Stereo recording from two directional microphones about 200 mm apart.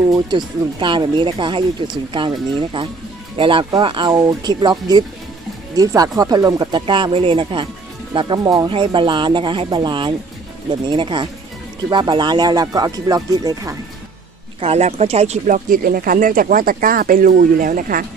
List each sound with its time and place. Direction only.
0.3 s speech: 20° right (ahead or behind)
14.6 s speech: 30° right (ahead or behind)